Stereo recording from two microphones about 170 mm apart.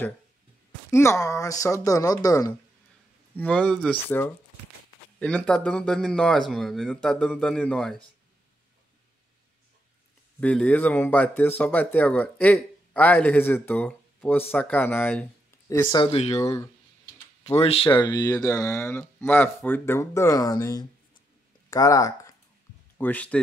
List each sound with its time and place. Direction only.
0.8 s speech: 15° left (ahead or behind)
3.3 s speech: 10° left (ahead or behind)
10.4 s speech: 10° left (ahead or behind); by 16.3 s 35° left (ahead or behind)
16.3 s speech: 15° left (ahead or behind)
17.5 s speech: 35° left (ahead or behind)
17.9 s speech: 25° left (ahead or behind)
22.9 s speech: 10° left (ahead or behind)